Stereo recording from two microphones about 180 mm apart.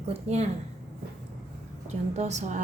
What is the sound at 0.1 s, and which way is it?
Speech, 35° right (ahead or behind).